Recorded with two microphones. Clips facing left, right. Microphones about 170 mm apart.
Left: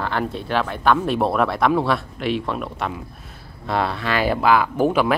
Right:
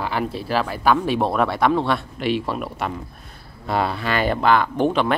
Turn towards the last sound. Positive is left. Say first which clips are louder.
# left 1 dB
turn(degrees=5)  # may be behind; listen again after turning